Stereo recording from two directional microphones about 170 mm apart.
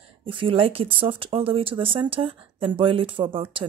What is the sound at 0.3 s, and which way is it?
Speech, 30° right (ahead or behind).